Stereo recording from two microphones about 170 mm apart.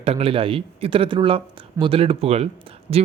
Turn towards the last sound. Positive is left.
turn(degrees=-35)  # may be behind; listen again after turning